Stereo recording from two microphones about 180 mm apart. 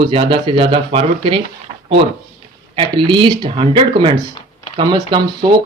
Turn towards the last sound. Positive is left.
turn(degrees=-25)  # may be behind; listen again after turning